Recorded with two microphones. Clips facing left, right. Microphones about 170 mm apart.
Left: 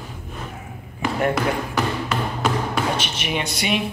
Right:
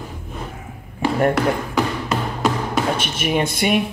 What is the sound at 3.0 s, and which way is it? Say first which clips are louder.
Speech: right 5 dB; 50° right (ahead or behind).